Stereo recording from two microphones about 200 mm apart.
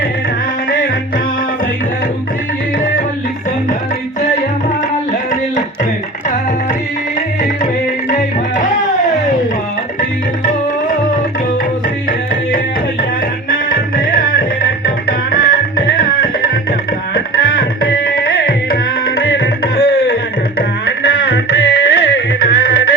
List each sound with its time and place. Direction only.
13.5 s music: 45° left (ahead or behind)
17.2 s tabla: 50° left (ahead or behind)
20.6 s music: 50° left (ahead or behind)